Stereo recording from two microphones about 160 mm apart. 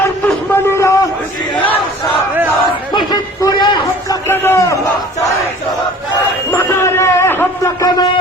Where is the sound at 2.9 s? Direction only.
30° left (ahead or behind).